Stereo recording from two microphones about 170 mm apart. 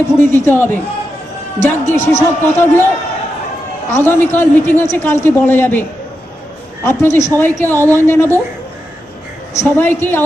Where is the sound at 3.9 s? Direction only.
15° left (ahead or behind).